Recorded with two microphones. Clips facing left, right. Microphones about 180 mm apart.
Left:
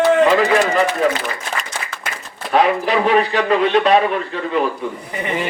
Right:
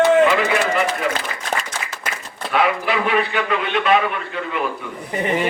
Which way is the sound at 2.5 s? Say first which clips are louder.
Left 4 dB; 40° left (ahead or behind).